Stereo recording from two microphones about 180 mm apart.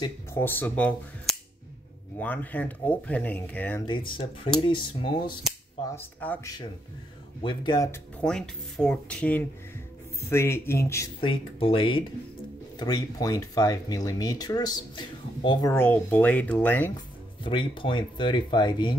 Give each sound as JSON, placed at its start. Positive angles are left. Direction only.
{"t": 0.3, "sound": "speech", "side_deg": 10}
{"t": 3.8, "sound": "speech", "side_deg": 25}
{"t": 5.9, "sound": "speech", "side_deg": 10}
{"t": 7.4, "sound": "speech", "side_deg": 25}
{"t": 7.9, "sound": "speech", "side_deg": 5}
{"t": 11.1, "sound": "speech", "side_deg": 30}
{"t": 15.7, "sound": "speech", "side_deg": 10}
{"t": 17.4, "sound": "speech", "side_deg": 25}